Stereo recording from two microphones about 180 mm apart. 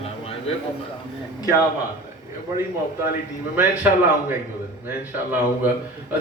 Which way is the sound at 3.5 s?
10° right (ahead or behind).